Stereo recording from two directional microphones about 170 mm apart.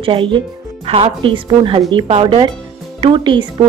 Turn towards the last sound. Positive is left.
turn(degrees=-30)  # may be behind; listen again after turning